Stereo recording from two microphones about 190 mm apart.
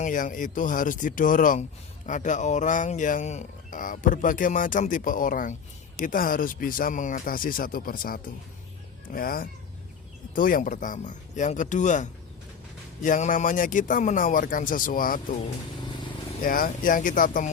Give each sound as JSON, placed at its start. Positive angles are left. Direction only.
{"t": 0.0, "sound": "speech", "side_deg": 45}
{"t": 16.4, "sound": "speech", "side_deg": 45}